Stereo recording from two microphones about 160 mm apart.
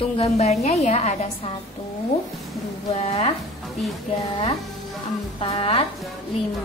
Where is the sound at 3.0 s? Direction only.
40° left (ahead or behind).